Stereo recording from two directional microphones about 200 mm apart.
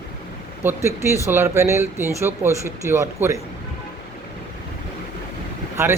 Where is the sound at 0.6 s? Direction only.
15° right (ahead or behind).